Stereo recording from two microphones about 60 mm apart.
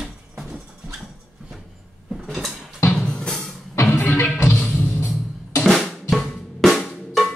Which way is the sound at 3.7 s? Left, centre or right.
Left.